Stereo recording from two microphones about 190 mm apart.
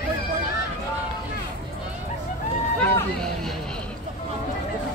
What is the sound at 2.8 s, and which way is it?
Vehicle, 10° left (ahead or behind).